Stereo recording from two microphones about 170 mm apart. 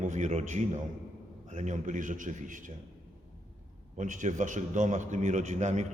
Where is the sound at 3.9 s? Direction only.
45° right (ahead or behind).